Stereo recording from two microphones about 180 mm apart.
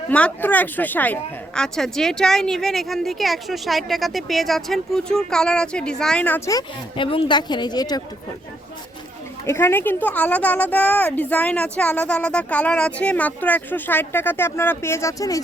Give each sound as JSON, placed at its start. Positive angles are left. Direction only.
{"t": 0.1, "sound": "speech", "side_deg": 10}
{"t": 9.5, "sound": "a woman's voice", "side_deg": 15}